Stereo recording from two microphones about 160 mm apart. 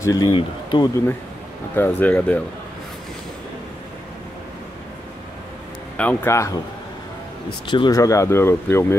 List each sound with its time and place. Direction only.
0.0 s speech: 20° left (ahead or behind)
1.8 s speech: 10° left (ahead or behind)
5.9 s speech: 15° left (ahead or behind)
7.6 s speech: 30° left (ahead or behind)